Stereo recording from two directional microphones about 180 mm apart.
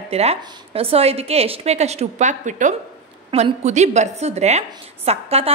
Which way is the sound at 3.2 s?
30° right (ahead or behind).